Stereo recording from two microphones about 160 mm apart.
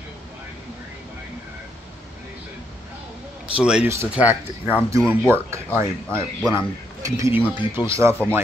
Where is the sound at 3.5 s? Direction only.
5° right (ahead or behind).